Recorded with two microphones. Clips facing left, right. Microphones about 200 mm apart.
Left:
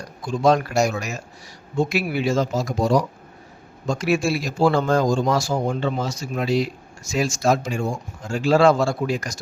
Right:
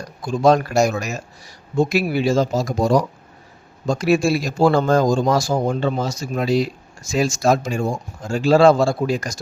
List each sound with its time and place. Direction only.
0.4 s a man's voice: 40° right (ahead or behind)
3.8 s a man's voice: 35° right (ahead or behind)